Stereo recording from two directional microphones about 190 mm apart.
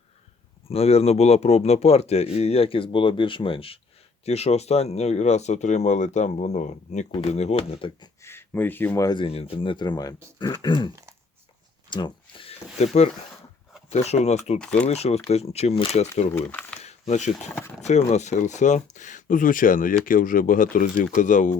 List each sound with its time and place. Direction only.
0.7 s speech: 30° left (ahead or behind)
8.2 s speech: 10° left (ahead or behind)
11.9 s speech: 25° left (ahead or behind)
16.3 s speech: 5° left (ahead or behind)
16.8 s speech: 35° left (ahead or behind)